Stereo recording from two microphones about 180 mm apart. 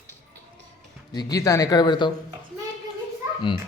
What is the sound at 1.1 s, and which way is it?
Speech, 20° left (ahead or behind).